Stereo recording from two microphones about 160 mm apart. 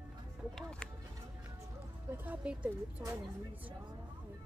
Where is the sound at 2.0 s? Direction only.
10° right (ahead or behind).